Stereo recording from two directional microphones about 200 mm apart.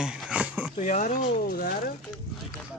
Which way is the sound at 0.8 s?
40° left (ahead or behind).